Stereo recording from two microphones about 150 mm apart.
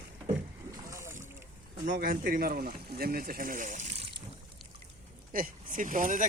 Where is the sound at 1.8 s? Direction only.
65° right (ahead or behind).